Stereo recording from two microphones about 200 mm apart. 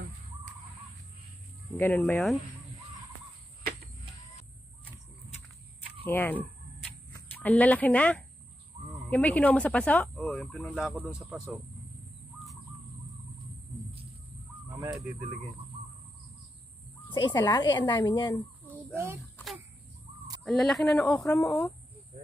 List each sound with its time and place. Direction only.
1.7 s speech: 10° left (ahead or behind)
6.0 s a sound: 10° left (ahead or behind)
9.1 s speech: 5° left (ahead or behind)
14.5 s goose: 10° right (ahead or behind)
17.1 s speech: 20° left (ahead or behind)
19.3 s a sound: centre (ahead or behind)
20.4 s speech: centre (ahead or behind)